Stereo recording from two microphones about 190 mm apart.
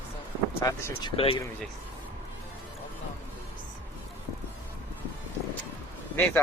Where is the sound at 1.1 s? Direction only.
30° left (ahead or behind).